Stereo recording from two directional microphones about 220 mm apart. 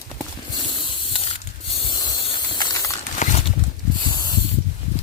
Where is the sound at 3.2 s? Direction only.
35° left (ahead or behind).